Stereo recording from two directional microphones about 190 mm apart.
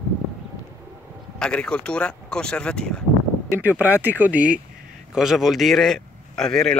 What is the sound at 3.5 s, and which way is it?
Speech, 10° right (ahead or behind).